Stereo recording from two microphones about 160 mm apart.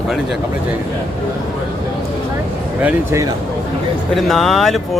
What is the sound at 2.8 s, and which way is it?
Speech, 10° right (ahead or behind).